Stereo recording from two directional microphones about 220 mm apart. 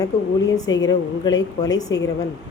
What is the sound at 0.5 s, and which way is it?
A woman's voice, 15° left (ahead or behind).